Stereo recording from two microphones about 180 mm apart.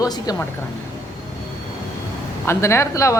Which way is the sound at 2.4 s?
15° left (ahead or behind).